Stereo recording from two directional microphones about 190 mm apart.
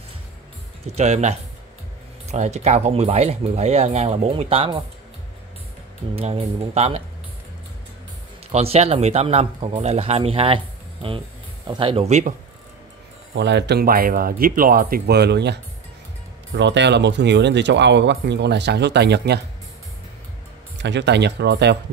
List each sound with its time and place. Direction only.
0.8 s speech: 35° right (ahead or behind)
6.1 s speech: 30° right (ahead or behind)
8.5 s speech: 35° right (ahead or behind)
13.3 s speech: 65° right (ahead or behind)
20.7 s speech: 65° right (ahead or behind)